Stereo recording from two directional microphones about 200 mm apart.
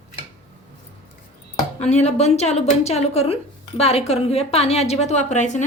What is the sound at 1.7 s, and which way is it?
A woman's voice, 35° left (ahead or behind).